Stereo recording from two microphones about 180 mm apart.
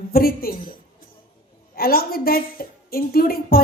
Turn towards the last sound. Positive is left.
turn(degrees=55)  # may be behind; listen again after turning